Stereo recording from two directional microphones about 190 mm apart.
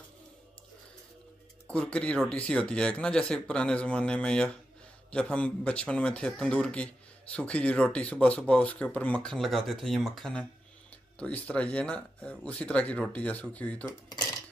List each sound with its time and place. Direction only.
1.7 s speech: 5° left (ahead or behind)